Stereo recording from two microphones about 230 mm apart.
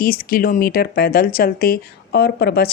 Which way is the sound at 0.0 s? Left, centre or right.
Left.